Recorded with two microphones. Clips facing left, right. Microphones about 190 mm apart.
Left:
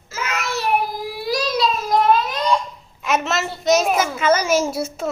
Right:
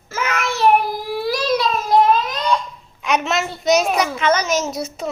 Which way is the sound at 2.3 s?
10° left (ahead or behind).